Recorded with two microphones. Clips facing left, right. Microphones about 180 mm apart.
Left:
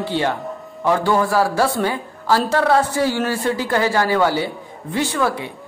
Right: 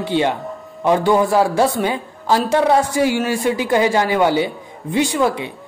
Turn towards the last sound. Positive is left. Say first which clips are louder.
# right 3 dB
turn(degrees=-15)  # may be behind; listen again after turning